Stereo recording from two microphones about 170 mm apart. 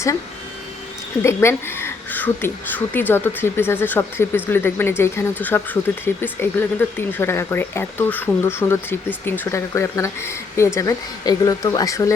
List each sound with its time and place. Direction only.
1.2 s a woman's voice: 15° left (ahead or behind)